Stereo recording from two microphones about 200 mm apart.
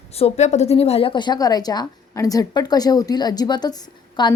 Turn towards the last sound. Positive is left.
turn(degrees=20)  # may be behind; listen again after turning